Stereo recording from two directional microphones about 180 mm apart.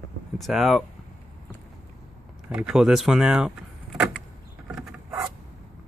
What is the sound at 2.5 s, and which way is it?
Speech, 5° right (ahead or behind).